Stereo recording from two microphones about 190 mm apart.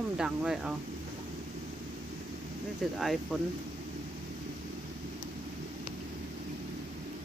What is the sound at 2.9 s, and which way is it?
Speech, centre (ahead or behind).